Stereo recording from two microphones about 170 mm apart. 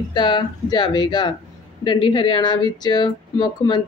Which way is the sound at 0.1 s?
25° left (ahead or behind).